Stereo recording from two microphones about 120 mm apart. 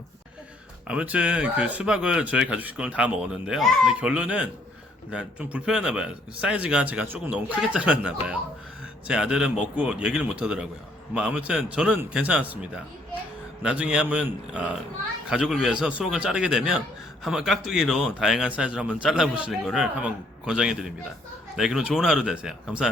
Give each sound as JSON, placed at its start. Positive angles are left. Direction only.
{"t": 0.9, "sound": "a man's voice", "side_deg": -10}